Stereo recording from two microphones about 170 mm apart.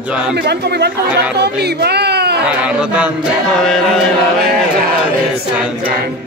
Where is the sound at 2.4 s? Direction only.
5° right (ahead or behind).